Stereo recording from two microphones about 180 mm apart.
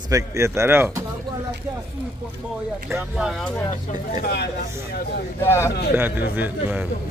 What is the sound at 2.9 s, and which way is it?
Speech, 5° right (ahead or behind).